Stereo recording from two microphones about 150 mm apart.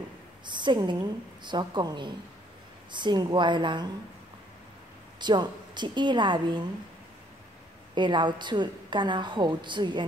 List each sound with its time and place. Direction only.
0.5 s a woman's voice: 30° right (ahead or behind)
5.2 s a woman's voice: 30° right (ahead or behind)
7.9 s a woman's voice: 30° right (ahead or behind)